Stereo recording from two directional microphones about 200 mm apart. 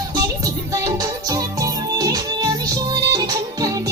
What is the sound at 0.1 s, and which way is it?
Music, 20° right (ahead or behind).